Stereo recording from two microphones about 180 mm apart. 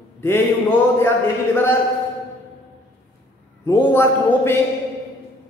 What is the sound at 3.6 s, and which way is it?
Speech, 10° left (ahead or behind).